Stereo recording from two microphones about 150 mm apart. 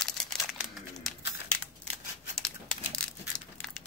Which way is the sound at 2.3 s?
5° left (ahead or behind).